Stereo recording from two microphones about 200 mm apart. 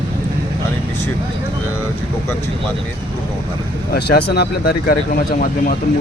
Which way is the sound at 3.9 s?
55° left (ahead or behind).